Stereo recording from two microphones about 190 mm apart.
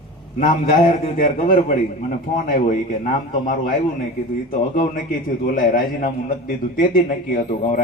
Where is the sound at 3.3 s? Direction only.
45° left (ahead or behind).